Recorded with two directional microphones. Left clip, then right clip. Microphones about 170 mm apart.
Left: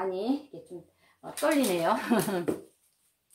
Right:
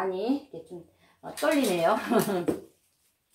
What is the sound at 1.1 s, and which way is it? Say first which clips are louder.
Speech: right 1 dB; 20° left (ahead or behind).